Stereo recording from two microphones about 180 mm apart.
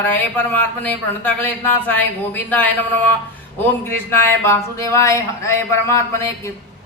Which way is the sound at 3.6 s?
15° left (ahead or behind).